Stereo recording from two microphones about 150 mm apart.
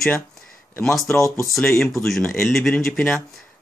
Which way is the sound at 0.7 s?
5° left (ahead or behind).